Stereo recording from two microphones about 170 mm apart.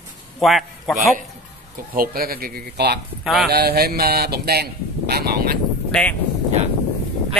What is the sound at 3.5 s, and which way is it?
Speech, 70° right (ahead or behind).